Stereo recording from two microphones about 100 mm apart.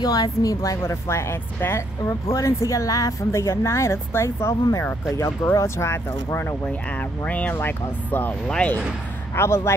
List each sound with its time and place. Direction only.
0.0 s a woman's voice: 40° left (ahead or behind)
6.3 s speech: 20° left (ahead or behind)
9.3 s speech: 25° left (ahead or behind)